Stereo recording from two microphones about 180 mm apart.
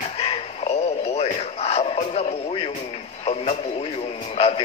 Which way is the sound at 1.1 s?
35° left (ahead or behind).